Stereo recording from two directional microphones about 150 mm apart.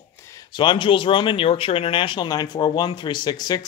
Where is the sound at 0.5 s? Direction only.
35° left (ahead or behind).